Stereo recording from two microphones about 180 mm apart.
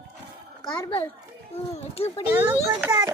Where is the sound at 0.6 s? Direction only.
30° left (ahead or behind).